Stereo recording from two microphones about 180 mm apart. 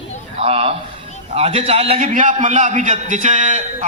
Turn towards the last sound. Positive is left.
turn(degrees=-45)  # may be behind; listen again after turning